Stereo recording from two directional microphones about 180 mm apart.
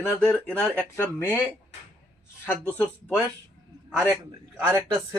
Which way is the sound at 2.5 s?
10° left (ahead or behind).